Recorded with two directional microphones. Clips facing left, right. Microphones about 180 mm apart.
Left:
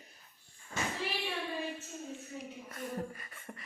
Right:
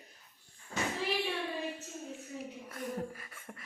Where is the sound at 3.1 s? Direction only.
Centre (ahead or behind).